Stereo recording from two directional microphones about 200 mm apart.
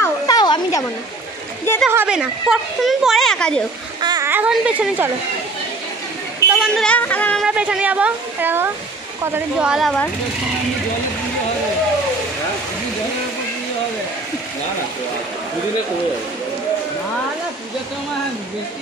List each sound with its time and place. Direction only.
0.0 s a sound: 20° left (ahead or behind)
1.9 s a woman's voice: 5° right (ahead or behind)
4.0 s a child's voice: 15° right (ahead or behind)
6.5 s a woman's voice: centre (ahead or behind)
7.4 s a woman's voice: 5° right (ahead or behind)